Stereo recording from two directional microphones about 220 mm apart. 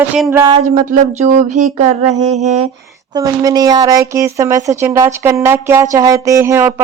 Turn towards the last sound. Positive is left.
turn(degrees=-10)  # may be behind; listen again after turning